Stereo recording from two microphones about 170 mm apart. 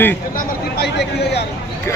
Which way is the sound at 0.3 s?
70° left (ahead or behind).